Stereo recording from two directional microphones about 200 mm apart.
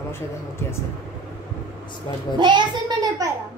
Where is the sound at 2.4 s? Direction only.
25° right (ahead or behind).